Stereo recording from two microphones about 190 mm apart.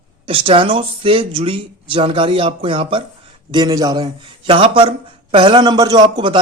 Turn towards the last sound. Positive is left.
turn(degrees=-25)  # may be behind; listen again after turning